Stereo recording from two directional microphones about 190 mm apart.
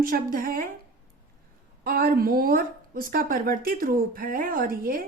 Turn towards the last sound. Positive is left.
turn(degrees=-50)  # may be behind; listen again after turning